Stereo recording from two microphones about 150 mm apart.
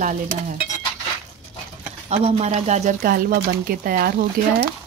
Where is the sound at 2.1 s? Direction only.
45° right (ahead or behind).